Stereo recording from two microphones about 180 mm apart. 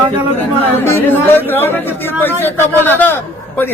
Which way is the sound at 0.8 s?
10° left (ahead or behind).